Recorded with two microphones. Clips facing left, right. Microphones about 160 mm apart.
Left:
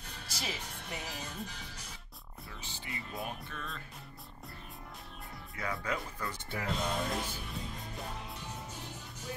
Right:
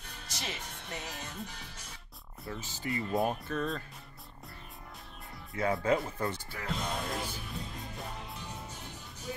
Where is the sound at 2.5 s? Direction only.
40° right (ahead or behind).